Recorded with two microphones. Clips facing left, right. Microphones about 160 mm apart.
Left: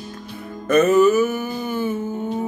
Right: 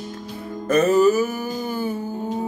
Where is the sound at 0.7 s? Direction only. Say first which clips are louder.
Left 2 dB; 35° right (ahead or behind).